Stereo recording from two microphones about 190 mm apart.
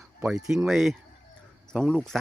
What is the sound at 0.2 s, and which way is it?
Speech, 5° right (ahead or behind).